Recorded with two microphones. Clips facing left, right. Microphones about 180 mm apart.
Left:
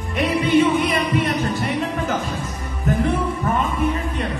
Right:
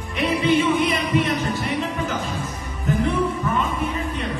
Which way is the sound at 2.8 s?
50° left (ahead or behind).